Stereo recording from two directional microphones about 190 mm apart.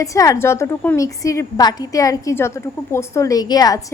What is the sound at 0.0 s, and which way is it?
A woman's voice, 15° left (ahead or behind).